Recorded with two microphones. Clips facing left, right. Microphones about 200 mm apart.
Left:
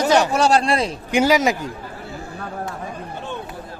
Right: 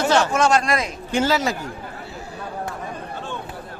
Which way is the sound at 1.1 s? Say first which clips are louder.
Left 4 dB; 15° left (ahead or behind).